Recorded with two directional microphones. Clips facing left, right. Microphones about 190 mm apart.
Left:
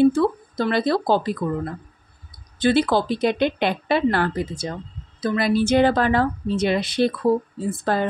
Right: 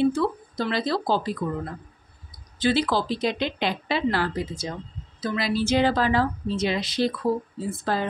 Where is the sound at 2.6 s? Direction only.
55° left (ahead or behind).